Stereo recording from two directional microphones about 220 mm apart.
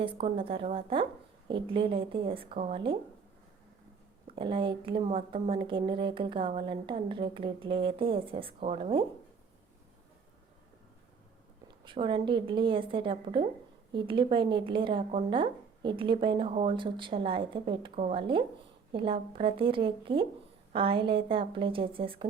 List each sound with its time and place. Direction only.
0.0 s a woman's voice: 25° right (ahead or behind)
4.3 s a woman's voice: 25° right (ahead or behind)
11.9 s a woman's voice: 20° right (ahead or behind)